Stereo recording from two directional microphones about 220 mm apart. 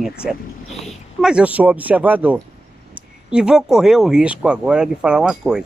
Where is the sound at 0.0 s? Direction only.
5° right (ahead or behind).